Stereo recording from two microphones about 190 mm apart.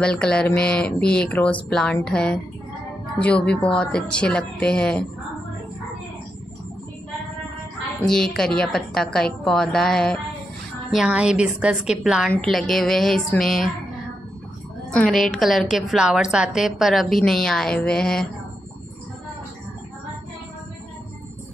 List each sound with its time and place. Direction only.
0.0 s a woman's voice: 5° left (ahead or behind)
8.0 s a woman's voice: 5° left (ahead or behind)
14.9 s a woman's voice: 5° left (ahead or behind)